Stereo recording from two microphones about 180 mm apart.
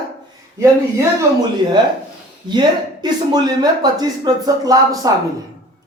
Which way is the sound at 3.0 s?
20° right (ahead or behind).